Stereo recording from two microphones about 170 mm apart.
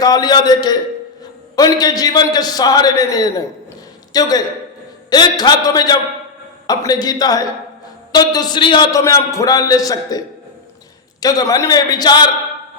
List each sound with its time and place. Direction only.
0.0 s a man's voice: 25° left (ahead or behind)